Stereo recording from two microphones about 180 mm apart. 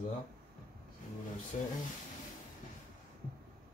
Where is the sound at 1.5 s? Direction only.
45° left (ahead or behind).